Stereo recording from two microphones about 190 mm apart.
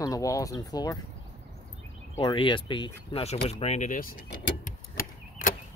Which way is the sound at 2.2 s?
25° left (ahead or behind).